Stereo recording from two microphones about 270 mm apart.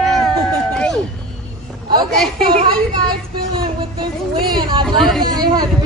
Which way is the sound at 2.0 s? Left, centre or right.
Centre.